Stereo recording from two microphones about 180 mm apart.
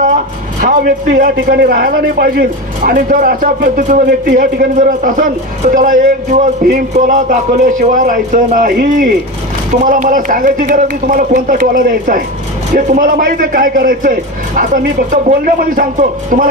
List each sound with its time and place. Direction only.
0.6 s a man's voice: 50° right (ahead or behind)